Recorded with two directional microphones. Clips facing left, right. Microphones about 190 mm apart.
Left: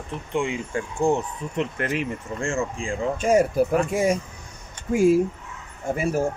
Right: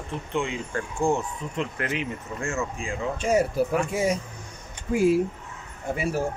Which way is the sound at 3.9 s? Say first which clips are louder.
Left 3 dB; 50° left (ahead or behind).